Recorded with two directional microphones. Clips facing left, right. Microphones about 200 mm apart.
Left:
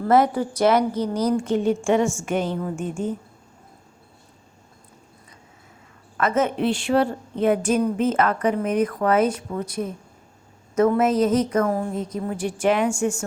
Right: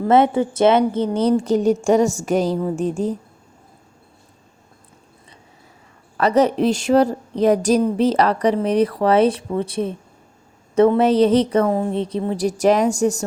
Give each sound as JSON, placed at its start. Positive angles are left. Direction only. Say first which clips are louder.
{"t": 0.0, "sound": "a woman's voice", "louder": "right 3 dB", "side_deg": -25}
{"t": 6.1, "sound": "a woman's voice", "louder": "right 5 dB", "side_deg": -35}